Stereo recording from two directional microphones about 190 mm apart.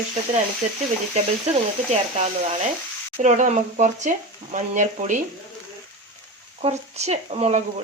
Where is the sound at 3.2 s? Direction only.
40° right (ahead or behind).